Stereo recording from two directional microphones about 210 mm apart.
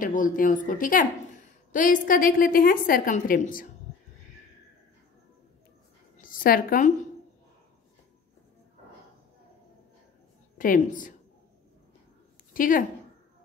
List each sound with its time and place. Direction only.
0.0 s a woman's voice: 40° left (ahead or behind)
6.2 s a woman's voice: 40° left (ahead or behind)
10.6 s a woman's voice: 40° left (ahead or behind)
12.5 s a woman's voice: 40° left (ahead or behind)